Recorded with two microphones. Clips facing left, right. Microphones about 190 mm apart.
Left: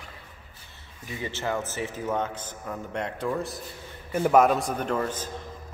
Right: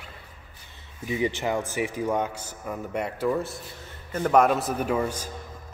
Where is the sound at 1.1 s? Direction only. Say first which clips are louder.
Right 4 dB; 15° right (ahead or behind).